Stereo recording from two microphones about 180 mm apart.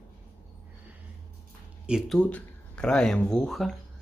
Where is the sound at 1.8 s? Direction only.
5° right (ahead or behind).